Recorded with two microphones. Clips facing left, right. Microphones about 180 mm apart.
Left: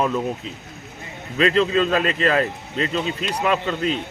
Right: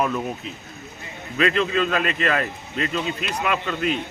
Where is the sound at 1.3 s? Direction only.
30° left (ahead or behind).